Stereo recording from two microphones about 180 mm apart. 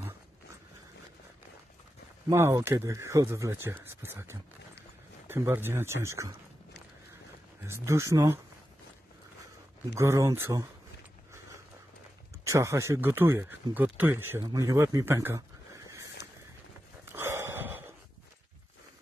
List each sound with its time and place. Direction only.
2.2 s speech: 15° right (ahead or behind)
7.6 s speech: 15° right (ahead or behind)
9.9 s speech: 15° right (ahead or behind)
12.4 s a man's voice: 15° right (ahead or behind)
17.0 s a sound: 15° right (ahead or behind)